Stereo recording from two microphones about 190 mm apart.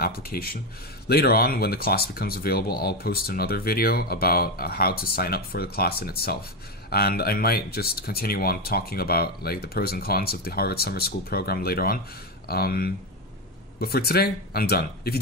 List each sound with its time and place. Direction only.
0.0 s speech: 50° left (ahead or behind)